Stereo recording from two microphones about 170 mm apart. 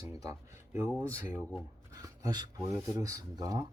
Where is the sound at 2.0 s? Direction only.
20° right (ahead or behind).